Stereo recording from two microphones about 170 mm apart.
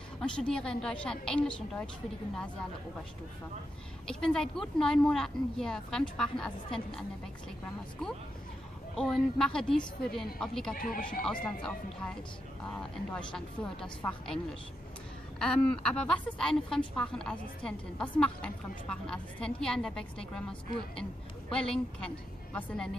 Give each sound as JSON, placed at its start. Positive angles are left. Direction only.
{"t": 0.2, "sound": "a woman's voice", "side_deg": 5}
{"t": 4.1, "sound": "a woman's voice", "side_deg": 5}
{"t": 8.9, "sound": "a woman's voice", "side_deg": 5}
{"t": 10.7, "sound": "speech", "side_deg": 55}
{"t": 11.4, "sound": "a woman's voice", "side_deg": 5}